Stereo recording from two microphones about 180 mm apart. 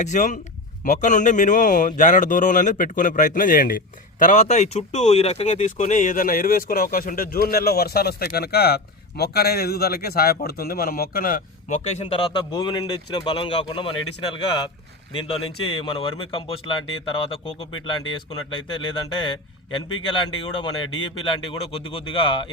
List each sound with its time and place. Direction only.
0.0 s speech: 45° left (ahead or behind)
11.8 s speech: 35° left (ahead or behind)
15.1 s speech: 30° left (ahead or behind)